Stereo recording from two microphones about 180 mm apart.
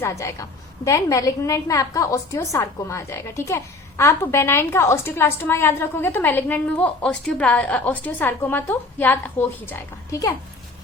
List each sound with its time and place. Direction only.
0.0 s a woman's voice: 15° left (ahead or behind)